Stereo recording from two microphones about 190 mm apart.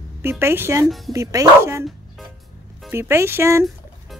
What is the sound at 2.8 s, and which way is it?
Speech, 15° right (ahead or behind).